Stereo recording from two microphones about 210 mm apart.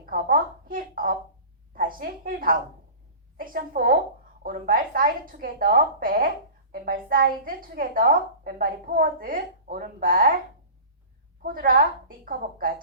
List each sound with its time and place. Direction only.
0.0 s a sound: 45° right (ahead or behind)
1.7 s a woman's voice: 40° right (ahead or behind)
11.4 s a woman's voice: 45° right (ahead or behind)